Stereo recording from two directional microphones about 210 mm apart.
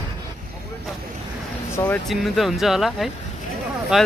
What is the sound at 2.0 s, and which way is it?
Speech, centre (ahead or behind).